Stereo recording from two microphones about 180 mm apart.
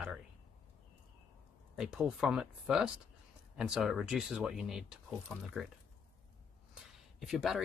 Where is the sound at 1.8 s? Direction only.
5° right (ahead or behind).